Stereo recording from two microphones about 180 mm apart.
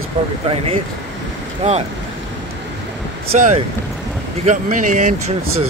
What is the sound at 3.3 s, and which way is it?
Speech, 40° right (ahead or behind).